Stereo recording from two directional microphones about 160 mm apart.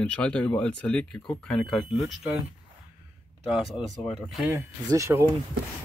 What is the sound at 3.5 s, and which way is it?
Speech, centre (ahead or behind).